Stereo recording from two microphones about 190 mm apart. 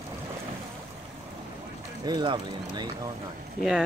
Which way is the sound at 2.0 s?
25° right (ahead or behind).